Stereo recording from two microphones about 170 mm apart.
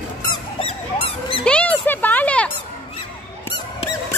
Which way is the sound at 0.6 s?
35° left (ahead or behind).